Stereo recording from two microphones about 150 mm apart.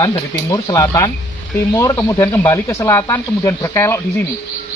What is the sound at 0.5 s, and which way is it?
Speech, 20° left (ahead or behind).